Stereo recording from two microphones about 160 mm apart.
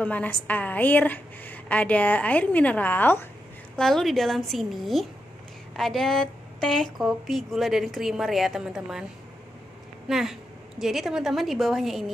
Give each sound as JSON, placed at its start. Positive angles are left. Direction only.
{"t": 0.0, "sound": "a woman's voice", "side_deg": 10}
{"t": 10.0, "sound": "a woman's voice", "side_deg": 0}